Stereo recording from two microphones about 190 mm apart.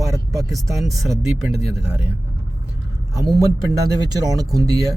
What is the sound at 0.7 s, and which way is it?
Speech, centre (ahead or behind).